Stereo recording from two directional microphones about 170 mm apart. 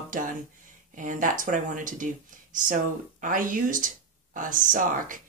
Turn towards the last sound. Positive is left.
turn(degrees=-50)  # may be behind; listen again after turning